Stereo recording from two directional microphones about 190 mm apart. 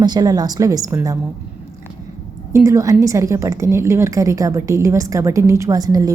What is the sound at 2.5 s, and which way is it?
A woman's voice, 15° right (ahead or behind).